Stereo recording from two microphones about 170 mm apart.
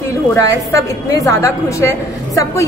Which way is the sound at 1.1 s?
20° left (ahead or behind).